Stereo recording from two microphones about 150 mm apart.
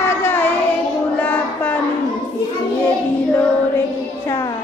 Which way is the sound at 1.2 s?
10° left (ahead or behind).